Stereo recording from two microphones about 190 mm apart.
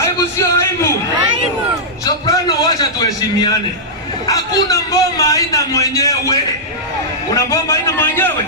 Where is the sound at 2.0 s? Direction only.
20° left (ahead or behind).